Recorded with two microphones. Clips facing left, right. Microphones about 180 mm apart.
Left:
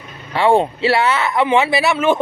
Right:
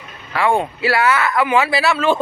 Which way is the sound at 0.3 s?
30° left (ahead or behind).